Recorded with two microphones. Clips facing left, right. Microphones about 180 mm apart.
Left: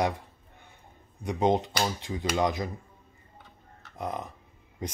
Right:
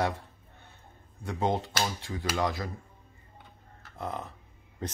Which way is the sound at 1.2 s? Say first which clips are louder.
Left 4 dB; 20° left (ahead or behind).